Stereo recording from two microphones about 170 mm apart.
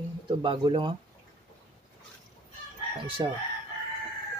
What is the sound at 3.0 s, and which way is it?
Speech, 30° right (ahead or behind).